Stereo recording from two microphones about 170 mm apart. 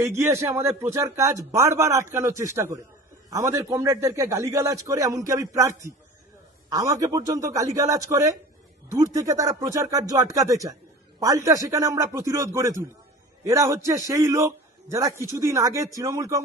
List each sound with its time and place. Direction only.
0.0 s a man's voice: 15° right (ahead or behind)